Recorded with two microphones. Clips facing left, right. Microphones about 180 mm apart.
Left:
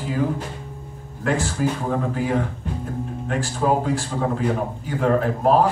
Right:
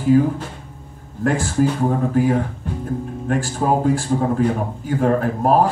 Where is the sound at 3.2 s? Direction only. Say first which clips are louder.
Right 2 dB; 50° right (ahead or behind).